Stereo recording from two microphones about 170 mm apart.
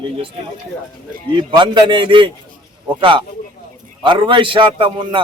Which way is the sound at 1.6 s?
30° right (ahead or behind).